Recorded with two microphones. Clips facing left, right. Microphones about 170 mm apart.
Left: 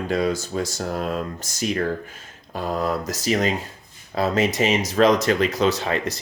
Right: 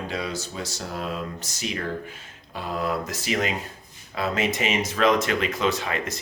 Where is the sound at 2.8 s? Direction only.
40° left (ahead or behind).